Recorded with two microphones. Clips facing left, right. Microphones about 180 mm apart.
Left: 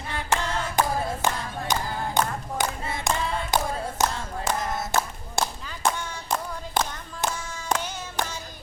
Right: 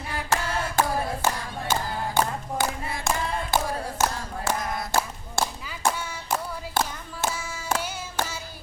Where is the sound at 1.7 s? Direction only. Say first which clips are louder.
Right 1 dB; 20° left (ahead or behind).